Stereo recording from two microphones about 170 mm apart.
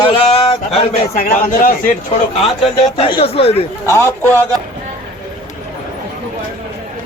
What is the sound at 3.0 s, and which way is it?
Speech, 30° left (ahead or behind).